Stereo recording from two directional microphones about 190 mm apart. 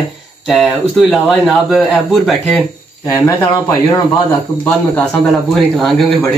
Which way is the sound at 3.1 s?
15° left (ahead or behind).